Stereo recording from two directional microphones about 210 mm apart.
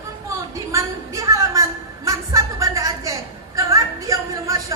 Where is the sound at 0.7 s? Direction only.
15° right (ahead or behind).